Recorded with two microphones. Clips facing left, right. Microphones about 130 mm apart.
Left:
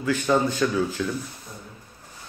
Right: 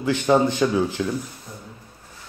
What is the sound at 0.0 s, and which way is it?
A man's voice, 25° right (ahead or behind).